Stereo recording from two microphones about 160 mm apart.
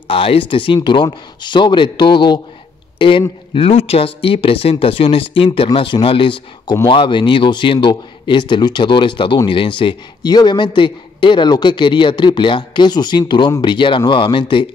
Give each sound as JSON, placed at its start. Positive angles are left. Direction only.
{"t": 0.1, "sound": "a man's voice", "side_deg": 35}